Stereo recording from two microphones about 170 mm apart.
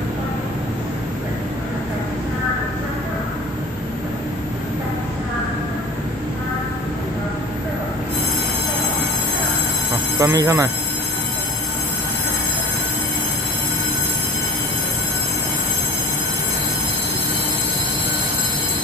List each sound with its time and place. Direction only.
10.2 s speech: 20° right (ahead or behind)